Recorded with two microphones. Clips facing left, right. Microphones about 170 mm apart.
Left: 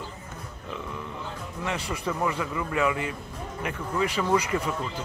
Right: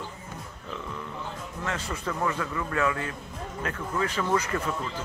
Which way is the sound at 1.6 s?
15° left (ahead or behind).